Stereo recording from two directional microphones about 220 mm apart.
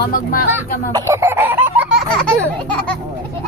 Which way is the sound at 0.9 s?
15° right (ahead or behind).